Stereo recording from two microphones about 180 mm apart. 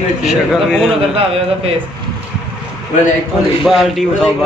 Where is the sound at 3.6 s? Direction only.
Centre (ahead or behind).